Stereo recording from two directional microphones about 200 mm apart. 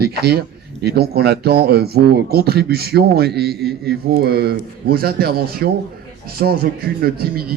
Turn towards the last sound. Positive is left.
turn(degrees=-50)  # may be behind; listen again after turning